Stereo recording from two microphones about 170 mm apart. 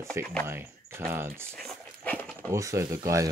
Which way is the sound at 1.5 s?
5° left (ahead or behind).